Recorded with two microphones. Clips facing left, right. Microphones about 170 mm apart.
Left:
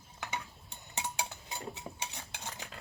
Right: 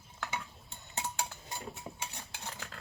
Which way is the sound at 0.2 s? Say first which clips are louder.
Right 1 dB; 20° left (ahead or behind).